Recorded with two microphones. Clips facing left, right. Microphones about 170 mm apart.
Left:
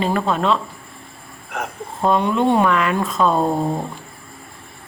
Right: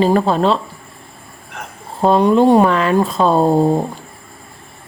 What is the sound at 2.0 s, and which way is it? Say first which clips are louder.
Speech: right 6 dB; 35° right (ahead or behind).